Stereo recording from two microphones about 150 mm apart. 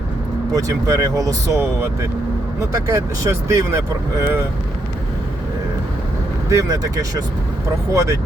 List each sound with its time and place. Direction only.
0.5 s speech: 25° right (ahead or behind)
6.5 s speech: 20° right (ahead or behind)